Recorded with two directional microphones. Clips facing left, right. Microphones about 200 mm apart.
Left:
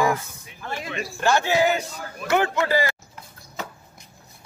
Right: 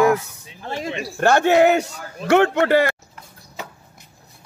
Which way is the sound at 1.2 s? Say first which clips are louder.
Right 6 dB; 60° right (ahead or behind).